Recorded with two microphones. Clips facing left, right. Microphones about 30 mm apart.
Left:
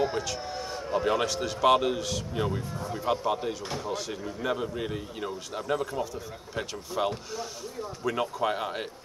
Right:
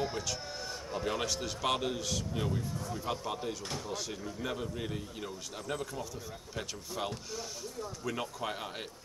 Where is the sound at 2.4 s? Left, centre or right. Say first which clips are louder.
Left 4 dB; left.